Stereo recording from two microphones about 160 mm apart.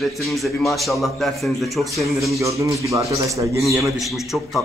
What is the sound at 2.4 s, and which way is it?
Speech, 20° right (ahead or behind).